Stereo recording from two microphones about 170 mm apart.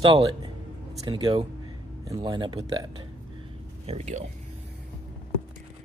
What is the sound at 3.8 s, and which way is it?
Speech, 40° right (ahead or behind).